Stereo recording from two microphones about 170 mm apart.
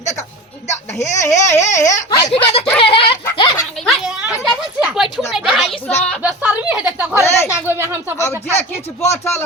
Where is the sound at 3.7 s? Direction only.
Centre (ahead or behind).